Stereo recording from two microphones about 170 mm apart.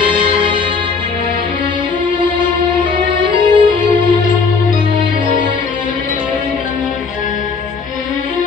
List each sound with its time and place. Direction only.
0.0 s music: 30° right (ahead or behind)
2.8 s music: 30° right (ahead or behind)